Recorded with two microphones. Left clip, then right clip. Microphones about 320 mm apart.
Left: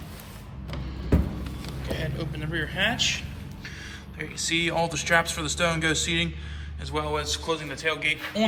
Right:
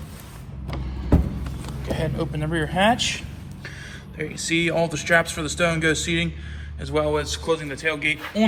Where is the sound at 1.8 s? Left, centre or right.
Centre.